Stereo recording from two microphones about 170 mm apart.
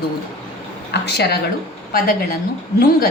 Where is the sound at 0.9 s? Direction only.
75° left (ahead or behind).